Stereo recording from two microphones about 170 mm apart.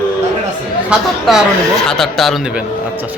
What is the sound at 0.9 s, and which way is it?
A man's voice, centre (ahead or behind).